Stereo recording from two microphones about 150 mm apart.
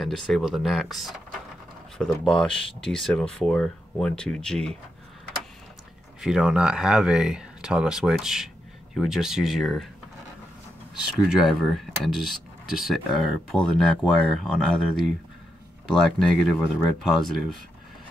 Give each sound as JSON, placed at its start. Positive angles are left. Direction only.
{"t": 0.0, "sound": "speech", "side_deg": 0}
{"t": 6.2, "sound": "speech", "side_deg": -5}
{"t": 11.4, "sound": "speech", "side_deg": 0}